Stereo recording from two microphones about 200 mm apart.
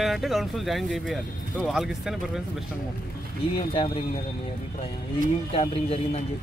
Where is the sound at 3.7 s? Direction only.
30° left (ahead or behind).